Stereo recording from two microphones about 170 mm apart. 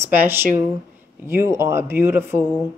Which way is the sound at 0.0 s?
10° right (ahead or behind).